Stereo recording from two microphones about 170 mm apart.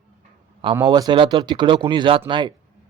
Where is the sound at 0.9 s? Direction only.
25° right (ahead or behind).